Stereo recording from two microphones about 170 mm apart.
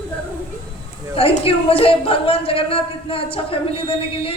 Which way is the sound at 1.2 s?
35° left (ahead or behind).